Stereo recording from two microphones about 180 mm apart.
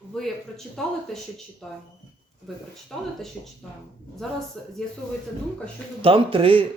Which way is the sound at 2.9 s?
Centre (ahead or behind).